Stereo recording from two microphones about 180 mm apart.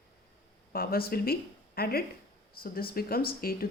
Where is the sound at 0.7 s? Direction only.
55° left (ahead or behind).